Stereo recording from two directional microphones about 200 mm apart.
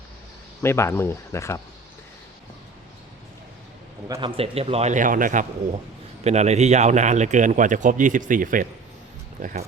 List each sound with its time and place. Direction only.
0.6 s speech: 10° left (ahead or behind)
4.1 s speech: 25° right (ahead or behind)